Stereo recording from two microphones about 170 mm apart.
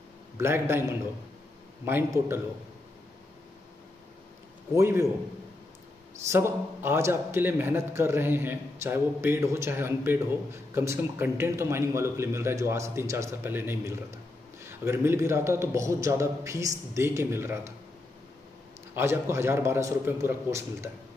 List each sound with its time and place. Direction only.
0.4 s a man's voice: 15° right (ahead or behind)
4.7 s a man's voice: 15° right (ahead or behind)
6.2 s a man's voice: 15° right (ahead or behind)
18.9 s a man's voice: 15° right (ahead or behind)